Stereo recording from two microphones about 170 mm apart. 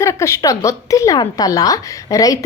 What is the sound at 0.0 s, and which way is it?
A woman's voice, 15° left (ahead or behind).